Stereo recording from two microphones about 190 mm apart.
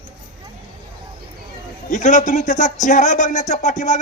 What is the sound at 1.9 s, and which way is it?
Speech, 40° left (ahead or behind).